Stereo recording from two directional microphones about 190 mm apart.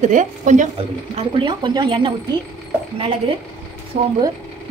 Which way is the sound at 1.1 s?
25° right (ahead or behind).